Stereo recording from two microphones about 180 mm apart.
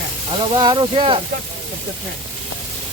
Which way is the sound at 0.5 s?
25° right (ahead or behind).